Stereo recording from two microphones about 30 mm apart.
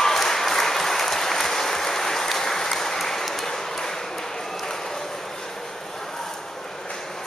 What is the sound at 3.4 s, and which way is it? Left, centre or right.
Ping, centre.